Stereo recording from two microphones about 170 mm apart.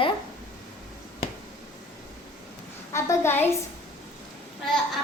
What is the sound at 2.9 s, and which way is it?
Speech, 15° left (ahead or behind).